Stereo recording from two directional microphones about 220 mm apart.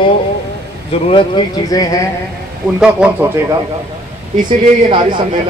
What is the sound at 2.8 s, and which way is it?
Speech, 5° right (ahead or behind).